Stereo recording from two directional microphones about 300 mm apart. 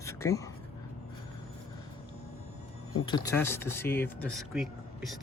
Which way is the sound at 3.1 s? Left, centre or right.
Centre.